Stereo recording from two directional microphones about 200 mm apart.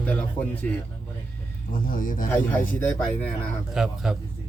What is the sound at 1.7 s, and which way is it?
Speech, 45° left (ahead or behind).